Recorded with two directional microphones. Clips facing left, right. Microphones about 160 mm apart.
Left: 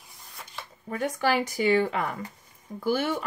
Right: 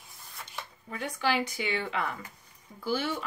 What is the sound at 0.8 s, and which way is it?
Speech, 45° left (ahead or behind).